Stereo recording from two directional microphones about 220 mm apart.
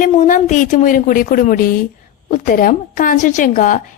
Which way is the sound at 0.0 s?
35° left (ahead or behind).